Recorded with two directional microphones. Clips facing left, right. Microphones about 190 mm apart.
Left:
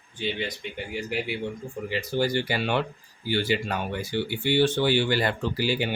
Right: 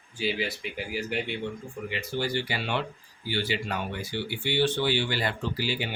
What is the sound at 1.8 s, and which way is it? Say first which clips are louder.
Speech: left 5 dB; 35° left (ahead or behind).